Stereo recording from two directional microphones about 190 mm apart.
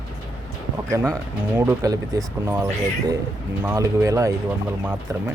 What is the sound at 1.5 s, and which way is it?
Speech, 15° right (ahead or behind).